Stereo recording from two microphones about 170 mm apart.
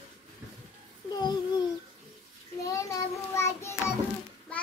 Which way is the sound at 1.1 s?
25° left (ahead or behind).